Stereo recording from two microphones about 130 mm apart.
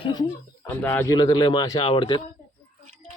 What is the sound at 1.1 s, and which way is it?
Speech, 35° left (ahead or behind).